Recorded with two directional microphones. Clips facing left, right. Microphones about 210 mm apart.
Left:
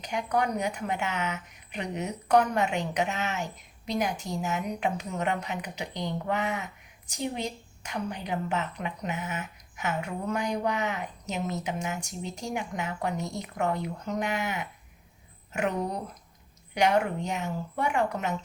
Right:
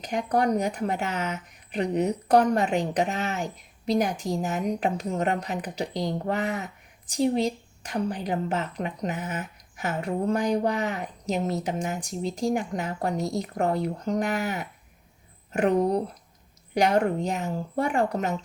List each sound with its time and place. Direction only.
0.0 s a woman's voice: 40° right (ahead or behind)